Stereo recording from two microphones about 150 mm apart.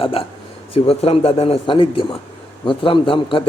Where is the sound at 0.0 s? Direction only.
40° left (ahead or behind).